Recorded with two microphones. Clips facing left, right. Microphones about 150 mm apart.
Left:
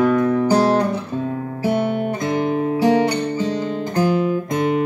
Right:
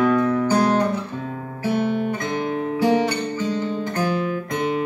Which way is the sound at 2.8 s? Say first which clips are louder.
Left 2 dB; 15° left (ahead or behind).